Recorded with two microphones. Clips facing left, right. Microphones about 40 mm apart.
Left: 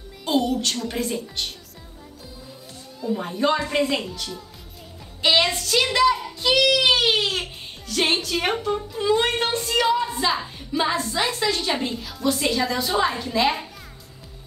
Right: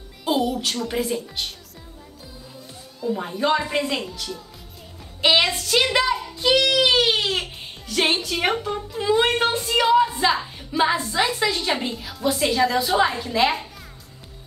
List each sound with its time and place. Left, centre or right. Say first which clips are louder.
0.2 s a woman's voice: even; centre
3.0 s a woman's voice: even; centre
5.2 s a woman's voice: right 1 dB; centre
7.2 s a sound: even; centre
8.1 s a woman's voice: right 1 dB; centre